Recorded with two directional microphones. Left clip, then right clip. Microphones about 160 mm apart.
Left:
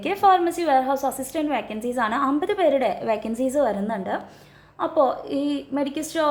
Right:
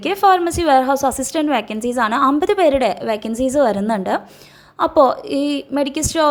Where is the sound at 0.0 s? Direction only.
25° right (ahead or behind).